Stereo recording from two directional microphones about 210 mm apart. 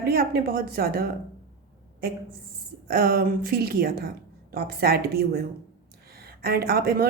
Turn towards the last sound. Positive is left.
turn(degrees=-45)  # may be behind; listen again after turning